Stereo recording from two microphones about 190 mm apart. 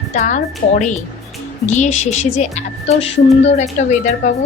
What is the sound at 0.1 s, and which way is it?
Speech, 40° left (ahead or behind).